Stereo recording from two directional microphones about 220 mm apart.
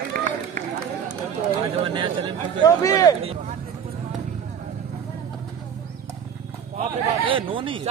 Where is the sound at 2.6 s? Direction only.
15° left (ahead or behind).